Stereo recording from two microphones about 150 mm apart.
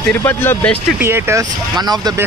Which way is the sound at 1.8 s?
25° right (ahead or behind).